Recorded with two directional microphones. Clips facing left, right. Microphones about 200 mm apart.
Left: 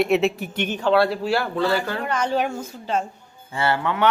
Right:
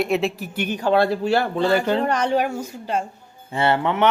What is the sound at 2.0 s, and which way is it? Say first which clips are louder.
Speech: right 3 dB; 40° right (ahead or behind).